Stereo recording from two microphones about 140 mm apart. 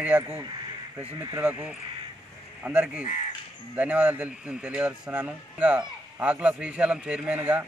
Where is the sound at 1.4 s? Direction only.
10° right (ahead or behind).